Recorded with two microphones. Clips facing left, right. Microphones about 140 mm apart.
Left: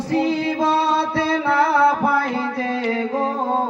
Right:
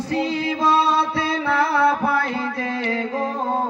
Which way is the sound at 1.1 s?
25° left (ahead or behind).